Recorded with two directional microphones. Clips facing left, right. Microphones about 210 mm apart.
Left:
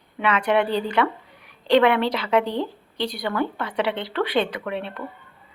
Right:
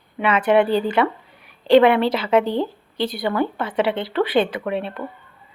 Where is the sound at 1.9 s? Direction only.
5° right (ahead or behind).